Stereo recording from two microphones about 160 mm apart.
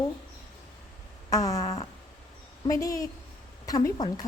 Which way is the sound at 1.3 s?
20° left (ahead or behind).